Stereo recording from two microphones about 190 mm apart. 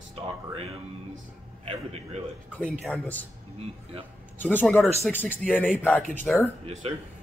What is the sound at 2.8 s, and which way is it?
Speech, 5° left (ahead or behind).